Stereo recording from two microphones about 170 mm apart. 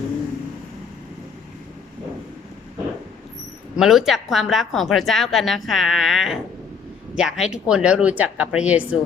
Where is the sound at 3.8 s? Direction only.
Centre (ahead or behind).